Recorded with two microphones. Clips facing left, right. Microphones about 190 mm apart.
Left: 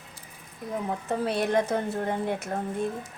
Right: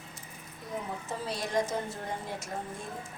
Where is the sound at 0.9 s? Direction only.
60° left (ahead or behind).